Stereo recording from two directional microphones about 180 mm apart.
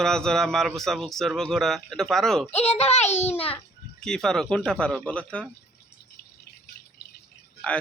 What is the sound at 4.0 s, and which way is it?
Speech, 5° left (ahead or behind).